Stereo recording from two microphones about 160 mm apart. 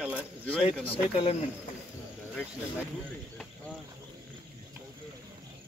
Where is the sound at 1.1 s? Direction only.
40° left (ahead or behind).